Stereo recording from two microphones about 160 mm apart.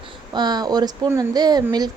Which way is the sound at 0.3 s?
25° right (ahead or behind).